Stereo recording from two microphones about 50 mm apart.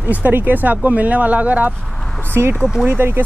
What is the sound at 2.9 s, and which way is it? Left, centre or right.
Speech, right.